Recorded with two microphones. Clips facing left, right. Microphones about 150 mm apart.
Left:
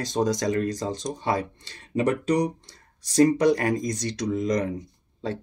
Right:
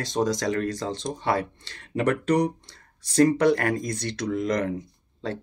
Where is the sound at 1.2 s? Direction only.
15° left (ahead or behind).